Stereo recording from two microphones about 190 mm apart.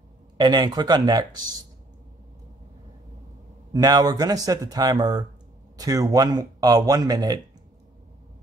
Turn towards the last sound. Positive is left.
turn(degrees=-20)  # may be behind; listen again after turning